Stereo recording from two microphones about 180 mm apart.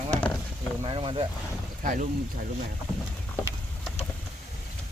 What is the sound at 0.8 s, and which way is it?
Speech, 30° right (ahead or behind).